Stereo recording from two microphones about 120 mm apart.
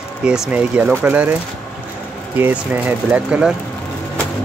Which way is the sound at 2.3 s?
15° right (ahead or behind).